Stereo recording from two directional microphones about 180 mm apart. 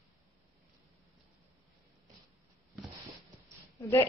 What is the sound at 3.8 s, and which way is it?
Speech, 15° left (ahead or behind).